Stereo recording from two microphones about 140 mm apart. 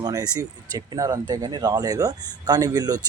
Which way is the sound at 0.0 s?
25° right (ahead or behind).